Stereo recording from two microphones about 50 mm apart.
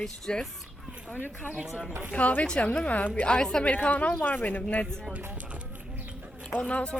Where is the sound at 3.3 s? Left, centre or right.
Centre.